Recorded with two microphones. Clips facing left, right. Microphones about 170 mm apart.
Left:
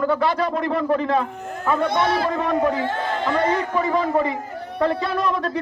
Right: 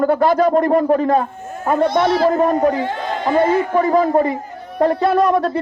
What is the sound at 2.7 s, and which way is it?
Speech, 20° right (ahead or behind).